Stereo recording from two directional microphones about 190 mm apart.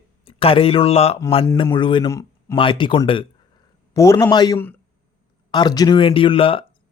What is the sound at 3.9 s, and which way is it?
A man's voice, 15° left (ahead or behind).